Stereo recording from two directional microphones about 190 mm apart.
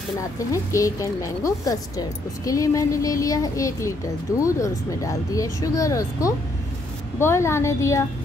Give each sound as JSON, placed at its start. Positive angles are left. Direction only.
{"t": 0.5, "sound": "speech", "side_deg": 15}